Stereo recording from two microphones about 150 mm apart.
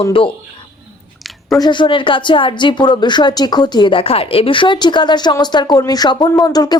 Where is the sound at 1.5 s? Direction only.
30° left (ahead or behind).